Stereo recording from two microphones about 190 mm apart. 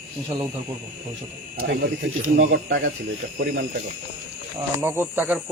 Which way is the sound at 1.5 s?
70° right (ahead or behind).